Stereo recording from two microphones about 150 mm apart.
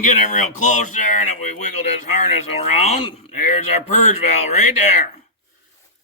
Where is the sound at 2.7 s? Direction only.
50° left (ahead or behind).